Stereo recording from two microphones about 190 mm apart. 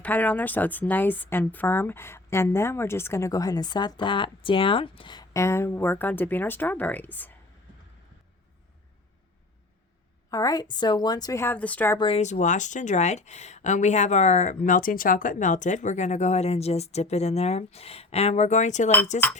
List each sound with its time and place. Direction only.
0.0 s speech: 10° left (ahead or behind)
10.3 s speech: 20° left (ahead or behind)
11.9 s speech: 30° left (ahead or behind)